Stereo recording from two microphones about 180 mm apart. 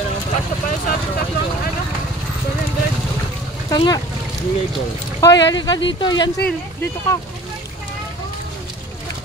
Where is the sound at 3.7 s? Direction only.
20° left (ahead or behind).